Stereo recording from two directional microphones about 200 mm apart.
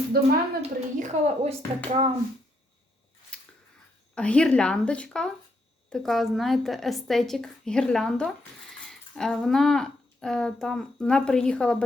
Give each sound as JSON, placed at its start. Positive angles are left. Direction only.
{"t": 0.6, "sound": "a woman's voice", "side_deg": -35}
{"t": 3.3, "sound": "chewing", "side_deg": 5}
{"t": 4.1, "sound": "a woman's voice", "side_deg": 5}